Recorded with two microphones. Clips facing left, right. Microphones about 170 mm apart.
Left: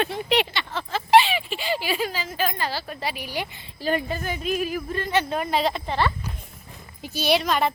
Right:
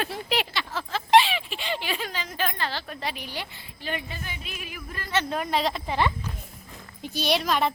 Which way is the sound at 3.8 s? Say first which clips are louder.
Left 8 dB; 40° left (ahead or behind).